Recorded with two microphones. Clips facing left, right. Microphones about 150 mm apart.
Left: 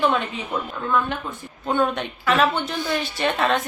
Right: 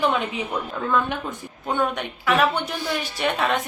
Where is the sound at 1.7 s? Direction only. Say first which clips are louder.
Left 2 dB; 10° right (ahead or behind).